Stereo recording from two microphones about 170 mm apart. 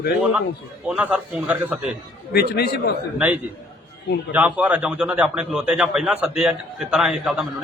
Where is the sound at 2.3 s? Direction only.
70° left (ahead or behind).